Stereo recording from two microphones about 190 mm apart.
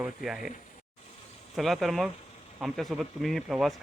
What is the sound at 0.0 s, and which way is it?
Speech, centre (ahead or behind).